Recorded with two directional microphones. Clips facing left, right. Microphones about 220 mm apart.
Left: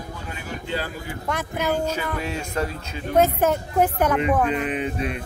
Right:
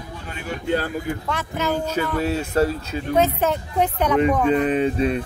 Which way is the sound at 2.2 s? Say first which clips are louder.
Right 7 dB; 35° right (ahead or behind).